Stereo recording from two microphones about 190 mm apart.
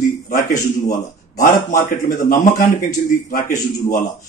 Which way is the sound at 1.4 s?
45° left (ahead or behind).